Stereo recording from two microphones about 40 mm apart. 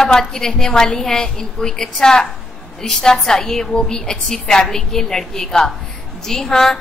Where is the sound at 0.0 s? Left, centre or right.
Centre.